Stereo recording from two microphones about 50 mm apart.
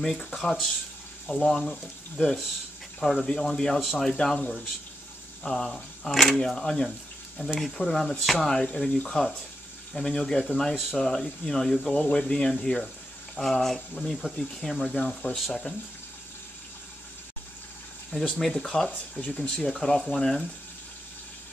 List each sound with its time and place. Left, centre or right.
0.0 s speech: centre
5.4 s speech: centre
15.0 s speech: centre
15.3 s speech: centre
18.1 s speech: left
18.5 s speech: centre
18.9 s speech: left
19.5 s speech: centre